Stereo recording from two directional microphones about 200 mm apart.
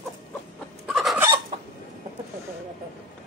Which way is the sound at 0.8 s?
5° right (ahead or behind).